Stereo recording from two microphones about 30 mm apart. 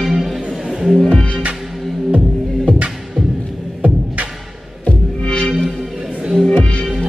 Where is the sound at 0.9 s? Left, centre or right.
Centre.